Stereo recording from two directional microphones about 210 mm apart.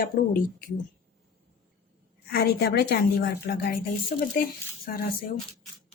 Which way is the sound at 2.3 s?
50° left (ahead or behind).